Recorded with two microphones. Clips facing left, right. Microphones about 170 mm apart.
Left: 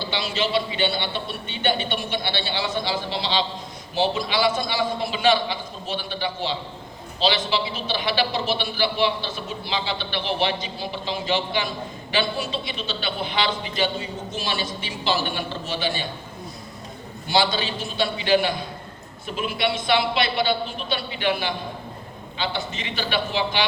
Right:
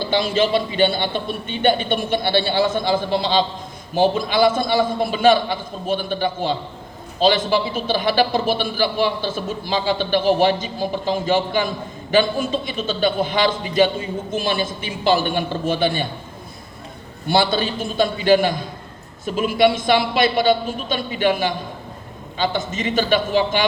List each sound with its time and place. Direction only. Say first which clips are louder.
0.0 s a man's voice: right 7 dB; 50° right (ahead or behind)
17.2 s a man's voice: right 4 dB; 55° right (ahead or behind)